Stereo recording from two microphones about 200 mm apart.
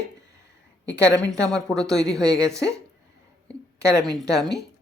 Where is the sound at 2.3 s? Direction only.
15° right (ahead or behind).